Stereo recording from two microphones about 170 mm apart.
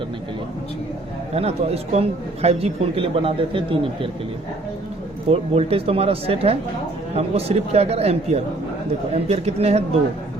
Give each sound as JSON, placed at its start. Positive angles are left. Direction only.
{"t": 1.4, "sound": "a man's voice", "side_deg": -40}
{"t": 5.3, "sound": "a man's voice", "side_deg": -35}